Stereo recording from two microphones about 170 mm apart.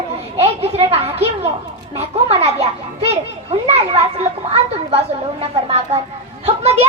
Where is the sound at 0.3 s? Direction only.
35° right (ahead or behind).